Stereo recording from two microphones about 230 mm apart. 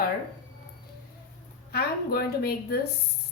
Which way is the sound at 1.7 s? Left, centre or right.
Left.